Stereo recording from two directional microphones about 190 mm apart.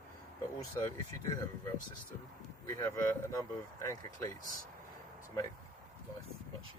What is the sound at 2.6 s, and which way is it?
Speech, 20° left (ahead or behind).